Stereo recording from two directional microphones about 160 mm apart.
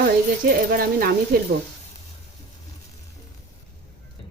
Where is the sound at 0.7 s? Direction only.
65° right (ahead or behind).